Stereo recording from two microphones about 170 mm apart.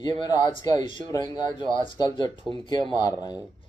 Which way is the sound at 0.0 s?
25° left (ahead or behind).